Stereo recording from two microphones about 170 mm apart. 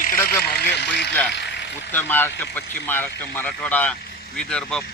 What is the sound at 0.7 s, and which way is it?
Vehicle, 80° left.